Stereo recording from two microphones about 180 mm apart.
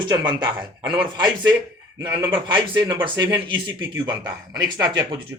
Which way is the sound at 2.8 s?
25° right (ahead or behind).